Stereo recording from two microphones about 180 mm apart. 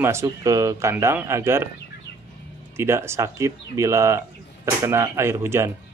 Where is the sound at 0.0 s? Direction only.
15° right (ahead or behind).